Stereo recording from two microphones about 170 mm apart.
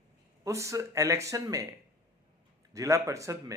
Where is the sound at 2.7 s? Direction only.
20° right (ahead or behind).